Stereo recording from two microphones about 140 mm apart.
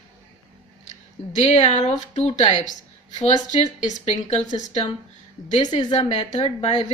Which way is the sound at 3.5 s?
60° left (ahead or behind).